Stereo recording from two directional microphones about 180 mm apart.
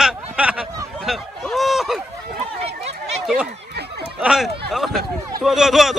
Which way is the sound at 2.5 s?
35° right (ahead or behind).